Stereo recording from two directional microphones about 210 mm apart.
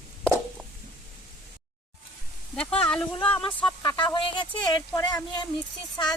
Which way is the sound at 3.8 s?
20° left (ahead or behind).